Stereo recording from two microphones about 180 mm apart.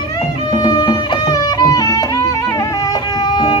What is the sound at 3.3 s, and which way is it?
Music, 25° left (ahead or behind).